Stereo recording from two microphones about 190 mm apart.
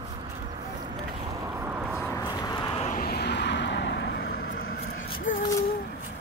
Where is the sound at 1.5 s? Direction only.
10° right (ahead or behind).